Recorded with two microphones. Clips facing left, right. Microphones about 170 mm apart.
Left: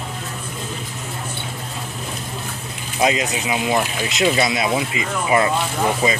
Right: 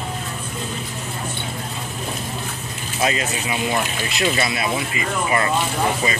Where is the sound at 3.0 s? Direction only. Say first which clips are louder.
Left 3 dB; 15° left (ahead or behind).